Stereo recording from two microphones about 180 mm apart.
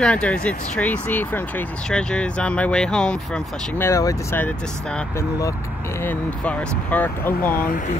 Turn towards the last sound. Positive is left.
turn(degrees=10)  # may be behind; listen again after turning